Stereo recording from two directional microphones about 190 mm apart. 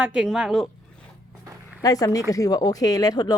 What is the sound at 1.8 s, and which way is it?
Speech, 20° left (ahead or behind).